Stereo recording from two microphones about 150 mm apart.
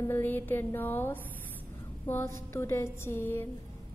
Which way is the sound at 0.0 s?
15° left (ahead or behind).